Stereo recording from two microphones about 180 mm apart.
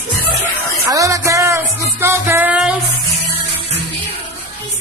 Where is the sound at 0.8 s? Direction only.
20° right (ahead or behind).